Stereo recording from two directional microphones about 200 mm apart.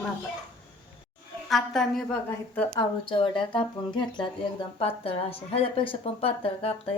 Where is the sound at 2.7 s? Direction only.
25° left (ahead or behind).